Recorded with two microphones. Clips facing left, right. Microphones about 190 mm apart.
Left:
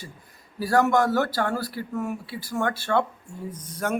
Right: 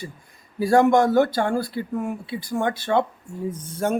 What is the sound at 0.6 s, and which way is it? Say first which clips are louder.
Speech: right 4 dB; 25° right (ahead or behind).